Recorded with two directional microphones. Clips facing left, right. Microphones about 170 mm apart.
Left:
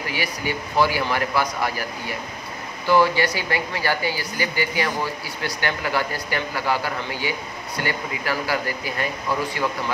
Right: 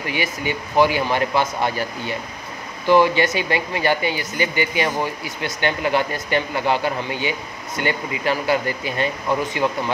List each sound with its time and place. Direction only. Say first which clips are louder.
0.1 s speech: right 3 dB; 20° right (ahead or behind)